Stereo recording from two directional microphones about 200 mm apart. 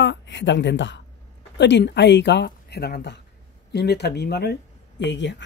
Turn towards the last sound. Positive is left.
turn(degrees=65)  # may be behind; listen again after turning